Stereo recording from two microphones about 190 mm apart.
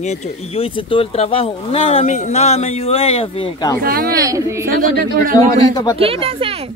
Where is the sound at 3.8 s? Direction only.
50° right (ahead or behind).